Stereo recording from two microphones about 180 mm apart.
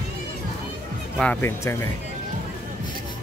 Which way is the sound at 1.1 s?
5° left (ahead or behind).